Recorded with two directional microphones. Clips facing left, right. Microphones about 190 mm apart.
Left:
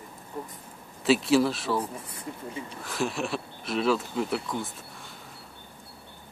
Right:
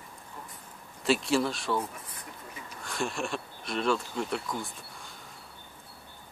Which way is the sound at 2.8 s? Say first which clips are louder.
Left 2 dB; centre (ahead or behind).